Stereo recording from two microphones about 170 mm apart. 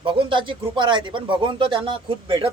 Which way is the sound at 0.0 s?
30° right (ahead or behind).